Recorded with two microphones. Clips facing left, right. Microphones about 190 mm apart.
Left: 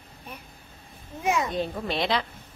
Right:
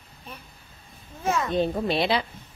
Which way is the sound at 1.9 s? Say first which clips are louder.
Right 3 dB; 10° right (ahead or behind).